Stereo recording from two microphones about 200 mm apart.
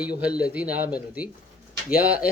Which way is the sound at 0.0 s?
5° right (ahead or behind).